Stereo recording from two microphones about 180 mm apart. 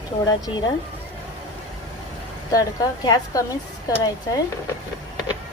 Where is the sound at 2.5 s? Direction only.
20° left (ahead or behind).